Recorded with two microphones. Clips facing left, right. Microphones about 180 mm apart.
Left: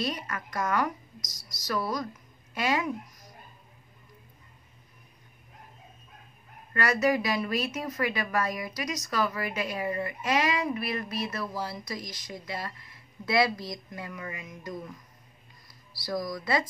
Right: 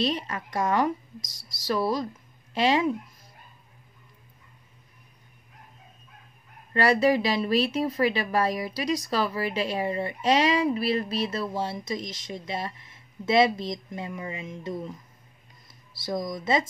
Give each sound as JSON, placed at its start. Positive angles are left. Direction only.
{"t": 0.0, "sound": "a woman's voice", "side_deg": -25}
{"t": 6.7, "sound": "a woman's voice", "side_deg": -30}